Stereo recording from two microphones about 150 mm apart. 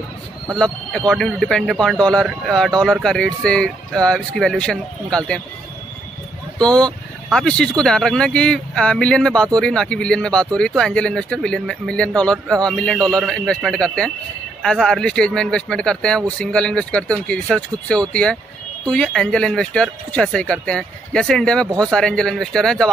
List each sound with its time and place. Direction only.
0.6 s speech: 5° left (ahead or behind)
6.6 s speech: 5° left (ahead or behind)